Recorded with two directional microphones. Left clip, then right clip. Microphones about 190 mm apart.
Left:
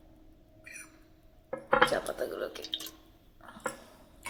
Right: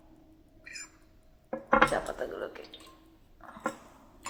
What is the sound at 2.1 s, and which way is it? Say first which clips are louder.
Drip: left 1 dB; 35° left (ahead or behind).